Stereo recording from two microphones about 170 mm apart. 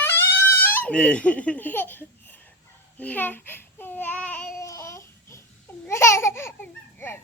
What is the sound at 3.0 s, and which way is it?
Babbling, 10° left (ahead or behind).